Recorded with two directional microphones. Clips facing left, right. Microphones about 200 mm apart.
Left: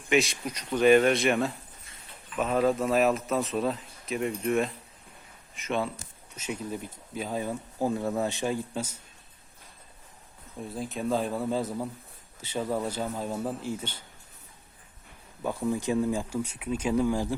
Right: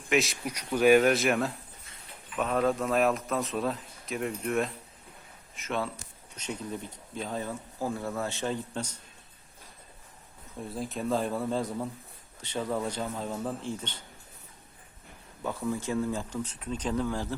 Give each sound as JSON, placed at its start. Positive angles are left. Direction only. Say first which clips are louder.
{"t": 0.1, "sound": "a man's voice", "louder": "left 2 dB", "side_deg": 0}
{"t": 10.6, "sound": "a man's voice", "louder": "left 1 dB", "side_deg": 0}
{"t": 15.4, "sound": "speech", "louder": "left 3 dB", "side_deg": 15}